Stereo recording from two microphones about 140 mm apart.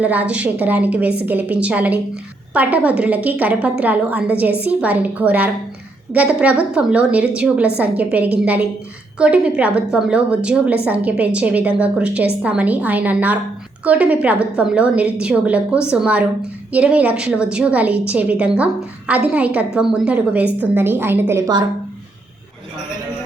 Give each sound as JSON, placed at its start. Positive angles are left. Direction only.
{"t": 0.0, "sound": "a woman's voice", "side_deg": -10}